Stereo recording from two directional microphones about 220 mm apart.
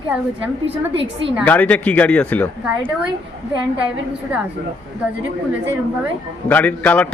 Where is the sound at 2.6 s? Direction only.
10° right (ahead or behind).